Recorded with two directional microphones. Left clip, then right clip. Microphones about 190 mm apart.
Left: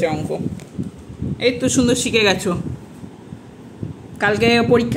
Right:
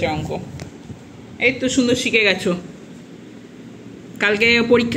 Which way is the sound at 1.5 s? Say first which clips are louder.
Left 1 dB; 20° left (ahead or behind).